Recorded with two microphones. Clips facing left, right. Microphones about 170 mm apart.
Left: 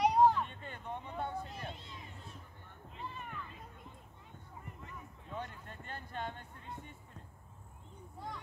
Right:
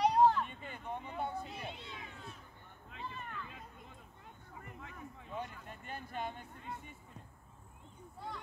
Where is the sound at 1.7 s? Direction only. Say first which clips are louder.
Right 2 dB; 70° right (ahead or behind).